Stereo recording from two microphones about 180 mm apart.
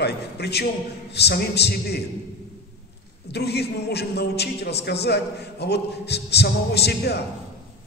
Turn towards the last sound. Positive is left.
turn(degrees=65)  # may be behind; listen again after turning